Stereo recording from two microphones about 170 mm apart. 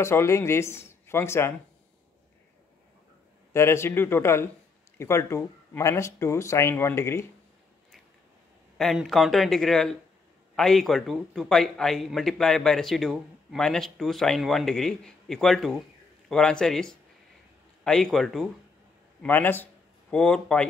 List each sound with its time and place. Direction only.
0.0 s speech: 15° left (ahead or behind)
3.5 s speech: 15° left (ahead or behind)
8.7 s a man's voice: centre (ahead or behind)